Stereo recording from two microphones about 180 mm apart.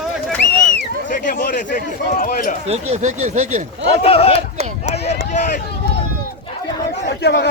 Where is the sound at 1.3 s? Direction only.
50° left (ahead or behind).